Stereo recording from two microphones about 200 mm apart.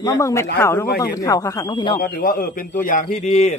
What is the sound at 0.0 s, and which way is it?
Speech, 15° left (ahead or behind).